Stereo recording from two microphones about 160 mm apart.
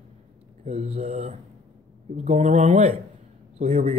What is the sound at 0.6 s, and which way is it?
Speech, 40° right (ahead or behind).